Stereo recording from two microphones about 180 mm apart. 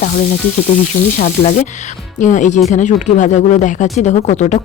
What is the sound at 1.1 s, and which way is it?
Speech, 40° left (ahead or behind).